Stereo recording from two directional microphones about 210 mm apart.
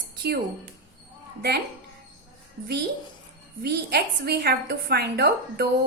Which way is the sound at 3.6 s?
50° right (ahead or behind).